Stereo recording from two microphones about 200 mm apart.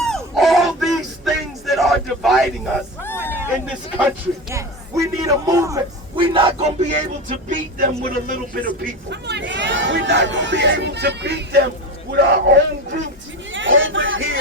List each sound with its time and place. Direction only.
0.0 s a sound: centre (ahead or behind)
4.5 s a man's voice: 15° right (ahead or behind); by 8.4 s 45° right (ahead or behind)
9.0 s speech: 60° right (ahead or behind)
13.5 s chatter: 70° right (ahead or behind)